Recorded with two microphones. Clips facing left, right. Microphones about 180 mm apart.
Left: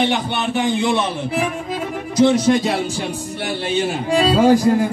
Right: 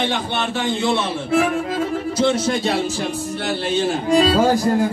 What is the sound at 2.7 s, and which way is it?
Speech, 10° left (ahead or behind).